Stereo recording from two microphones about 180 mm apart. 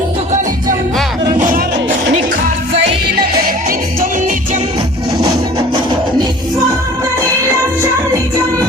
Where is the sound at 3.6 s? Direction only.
50° right (ahead or behind).